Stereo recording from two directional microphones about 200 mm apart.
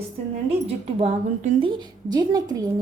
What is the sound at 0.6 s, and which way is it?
A woman's voice, 30° right (ahead or behind).